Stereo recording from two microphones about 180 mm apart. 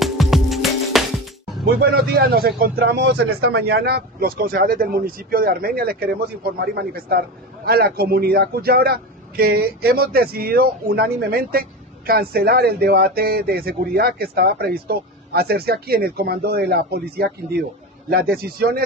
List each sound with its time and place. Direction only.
0.0 s music: centre (ahead or behind)
1.8 s a man's voice: 60° right (ahead or behind)